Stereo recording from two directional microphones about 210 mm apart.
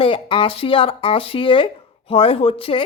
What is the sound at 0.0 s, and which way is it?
Speech, 25° left (ahead or behind).